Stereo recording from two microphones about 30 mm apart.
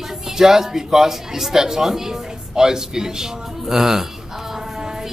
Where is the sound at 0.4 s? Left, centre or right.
Centre.